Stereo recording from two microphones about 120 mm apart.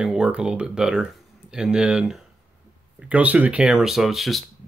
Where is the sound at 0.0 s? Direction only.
5° right (ahead or behind).